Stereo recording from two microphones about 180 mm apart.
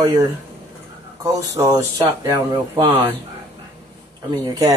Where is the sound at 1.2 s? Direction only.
20° right (ahead or behind).